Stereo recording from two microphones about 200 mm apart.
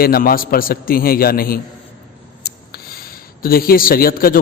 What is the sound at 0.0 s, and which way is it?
A man's voice, 50° left (ahead or behind).